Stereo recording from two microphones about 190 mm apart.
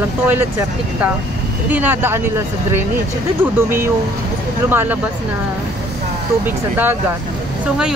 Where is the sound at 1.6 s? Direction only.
10° right (ahead or behind).